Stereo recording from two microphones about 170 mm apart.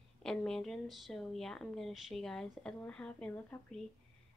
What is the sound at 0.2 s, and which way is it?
Speech, 5° left (ahead or behind).